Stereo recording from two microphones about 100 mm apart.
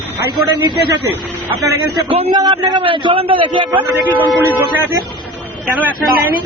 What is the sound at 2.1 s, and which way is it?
Speech, 80° right.